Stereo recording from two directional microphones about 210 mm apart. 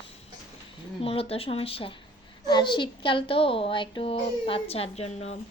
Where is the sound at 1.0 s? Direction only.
25° left (ahead or behind).